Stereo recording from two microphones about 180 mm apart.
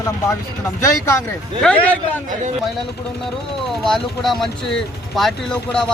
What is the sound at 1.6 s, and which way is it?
Speech, 5° left (ahead or behind).